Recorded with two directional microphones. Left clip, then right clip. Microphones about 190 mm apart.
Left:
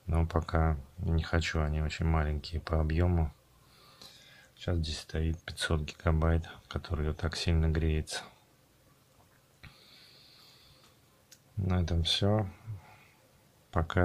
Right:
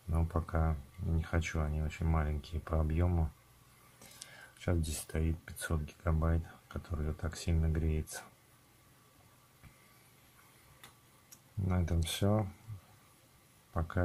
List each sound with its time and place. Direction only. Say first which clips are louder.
0.1 s speech: left 5 dB; 20° left (ahead or behind)
4.6 s speech: left 2 dB; centre (ahead or behind)
5.4 s speech: left 7 dB; 20° left (ahead or behind)
11.6 s speech: left 6 dB; 10° left (ahead or behind)
13.7 s speech: left 7 dB; 25° left (ahead or behind)